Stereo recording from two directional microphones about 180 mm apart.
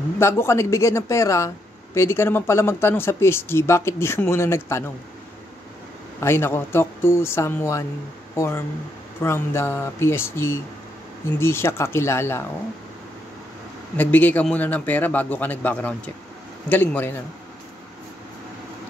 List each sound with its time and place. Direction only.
0.2 s speech: 15° left (ahead or behind)
6.2 s speech: 15° left (ahead or behind)
13.9 s speech: 10° left (ahead or behind)